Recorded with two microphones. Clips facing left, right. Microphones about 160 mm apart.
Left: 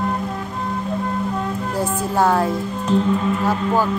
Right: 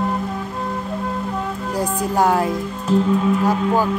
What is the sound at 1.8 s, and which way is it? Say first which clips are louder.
Speech: right 1 dB; 15° right (ahead or behind).